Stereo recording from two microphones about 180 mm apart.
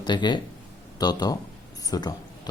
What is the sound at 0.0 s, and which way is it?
Speech, 25° left (ahead or behind).